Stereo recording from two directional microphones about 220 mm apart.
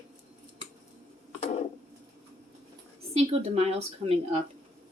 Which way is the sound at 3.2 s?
30° right (ahead or behind).